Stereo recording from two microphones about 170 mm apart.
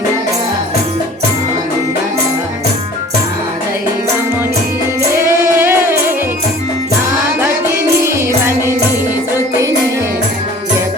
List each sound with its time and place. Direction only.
5.1 s music: 15° right (ahead or behind)
8.0 s music: 15° right (ahead or behind)